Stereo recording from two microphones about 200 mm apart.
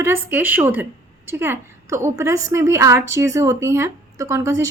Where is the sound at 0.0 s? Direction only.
10° right (ahead or behind).